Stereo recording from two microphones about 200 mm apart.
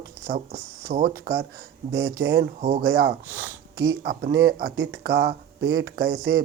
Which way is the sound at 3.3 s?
10° right (ahead or behind).